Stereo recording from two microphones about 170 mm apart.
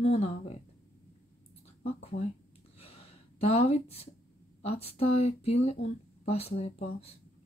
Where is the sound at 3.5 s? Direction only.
35° left (ahead or behind).